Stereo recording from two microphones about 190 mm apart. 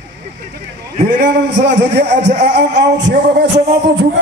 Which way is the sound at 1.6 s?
65° right (ahead or behind).